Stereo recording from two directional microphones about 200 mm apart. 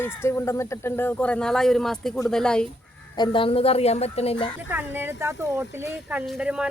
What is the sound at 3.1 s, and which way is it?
A woman's voice, 25° left (ahead or behind).